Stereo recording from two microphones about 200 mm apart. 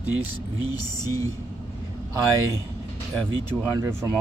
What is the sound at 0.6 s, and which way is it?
Music, 20° left (ahead or behind).